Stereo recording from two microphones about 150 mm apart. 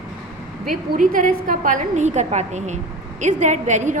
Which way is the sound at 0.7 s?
65° right (ahead or behind).